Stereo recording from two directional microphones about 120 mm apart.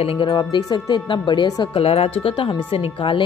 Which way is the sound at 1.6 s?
50° left (ahead or behind).